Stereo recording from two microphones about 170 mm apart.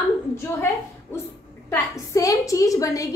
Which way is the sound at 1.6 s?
20° left (ahead or behind).